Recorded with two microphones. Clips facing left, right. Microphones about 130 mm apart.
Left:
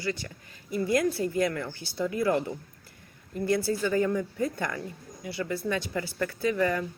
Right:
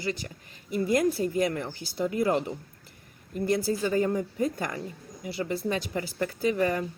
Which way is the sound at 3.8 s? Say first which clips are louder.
Even; 30° right (ahead or behind).